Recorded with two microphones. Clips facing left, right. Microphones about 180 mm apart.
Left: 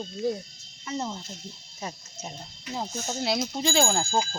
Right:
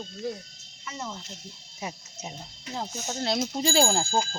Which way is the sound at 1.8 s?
10° right (ahead or behind).